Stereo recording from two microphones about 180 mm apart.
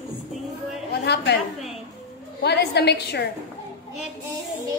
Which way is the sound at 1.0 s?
70° left (ahead or behind).